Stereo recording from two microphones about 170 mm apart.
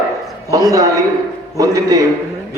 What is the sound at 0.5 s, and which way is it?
A man's voice, 20° right (ahead or behind).